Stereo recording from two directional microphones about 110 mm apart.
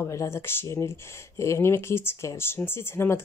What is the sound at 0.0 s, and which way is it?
Speech, 25° left (ahead or behind).